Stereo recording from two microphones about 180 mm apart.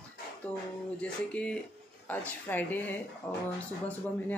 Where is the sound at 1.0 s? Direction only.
5° left (ahead or behind).